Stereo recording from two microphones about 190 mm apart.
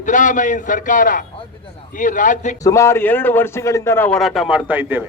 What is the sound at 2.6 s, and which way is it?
A man's voice, 15° left (ahead or behind).